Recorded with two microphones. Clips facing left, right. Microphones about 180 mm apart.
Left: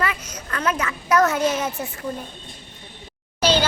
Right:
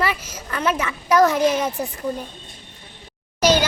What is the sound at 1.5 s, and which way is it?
Speech, 35° right (ahead or behind).